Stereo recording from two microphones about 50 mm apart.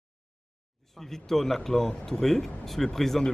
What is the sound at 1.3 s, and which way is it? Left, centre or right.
Speech, centre.